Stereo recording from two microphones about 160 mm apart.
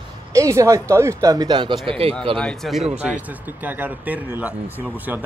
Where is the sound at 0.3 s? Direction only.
20° right (ahead or behind); by 2.1 s 35° right (ahead or behind).